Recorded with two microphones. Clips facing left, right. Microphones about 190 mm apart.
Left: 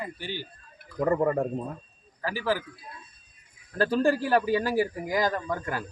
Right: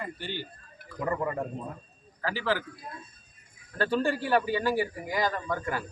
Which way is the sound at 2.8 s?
50° right (ahead or behind).